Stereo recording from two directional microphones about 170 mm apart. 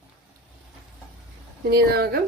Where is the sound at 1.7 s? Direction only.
65° right (ahead or behind).